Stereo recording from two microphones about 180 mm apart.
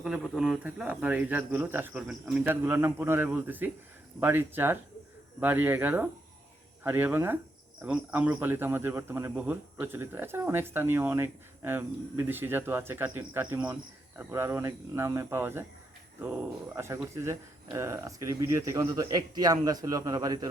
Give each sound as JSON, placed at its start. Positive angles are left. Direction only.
{"t": 0.0, "sound": "speech", "side_deg": -5}